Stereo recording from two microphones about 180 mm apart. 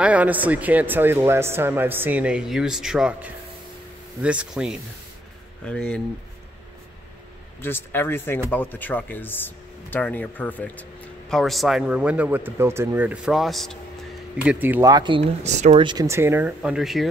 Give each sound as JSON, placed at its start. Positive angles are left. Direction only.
{"t": 0.0, "sound": "speech", "side_deg": -10}
{"t": 5.7, "sound": "speech", "side_deg": 5}
{"t": 7.6, "sound": "speech", "side_deg": 10}
{"t": 15.8, "sound": "speech", "side_deg": -20}